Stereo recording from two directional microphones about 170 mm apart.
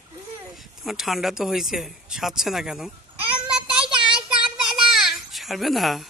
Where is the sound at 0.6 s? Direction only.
Centre (ahead or behind).